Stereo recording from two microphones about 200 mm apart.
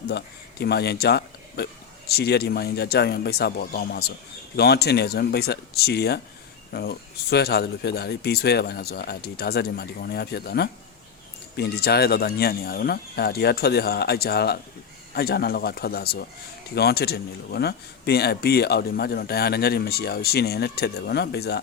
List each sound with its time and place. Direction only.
0.1 s speech: 55° left (ahead or behind)